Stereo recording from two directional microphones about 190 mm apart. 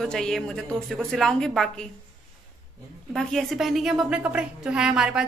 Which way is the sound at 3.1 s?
Centre (ahead or behind).